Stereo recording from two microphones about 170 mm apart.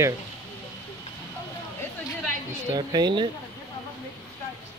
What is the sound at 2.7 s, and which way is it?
Speech, 25° right (ahead or behind).